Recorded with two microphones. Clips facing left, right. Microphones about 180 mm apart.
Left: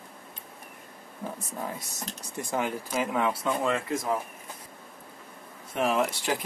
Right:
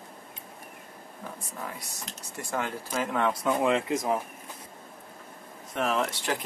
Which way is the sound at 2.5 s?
15° left (ahead or behind).